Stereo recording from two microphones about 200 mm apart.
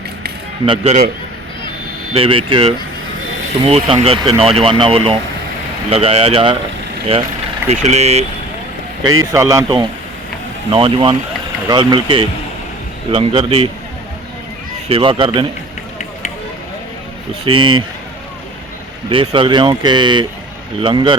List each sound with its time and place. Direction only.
0.6 s speech: 30° right (ahead or behind)
2.1 s speech: 25° right (ahead or behind)
9.3 s speech: 15° right (ahead or behind)
14.8 s speech: 25° right (ahead or behind)
17.4 s speech: 25° right (ahead or behind)
19.1 s speech: 25° right (ahead or behind)